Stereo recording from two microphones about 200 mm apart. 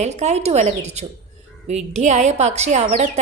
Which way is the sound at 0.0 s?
35° right (ahead or behind).